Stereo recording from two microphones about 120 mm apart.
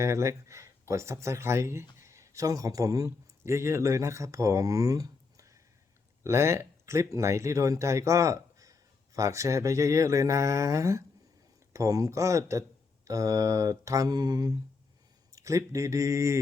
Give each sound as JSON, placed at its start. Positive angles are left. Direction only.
{"t": 0.0, "sound": "speech", "side_deg": -25}